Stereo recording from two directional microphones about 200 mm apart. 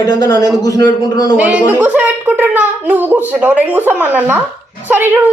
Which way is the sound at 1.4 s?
10° right (ahead or behind).